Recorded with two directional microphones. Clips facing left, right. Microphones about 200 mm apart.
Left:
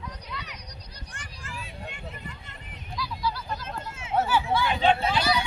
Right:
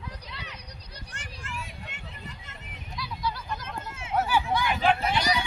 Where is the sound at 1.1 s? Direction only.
70° right (ahead or behind).